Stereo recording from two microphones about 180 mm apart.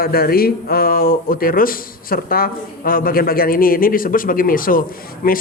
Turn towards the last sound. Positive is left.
turn(degrees=50)  # may be behind; listen again after turning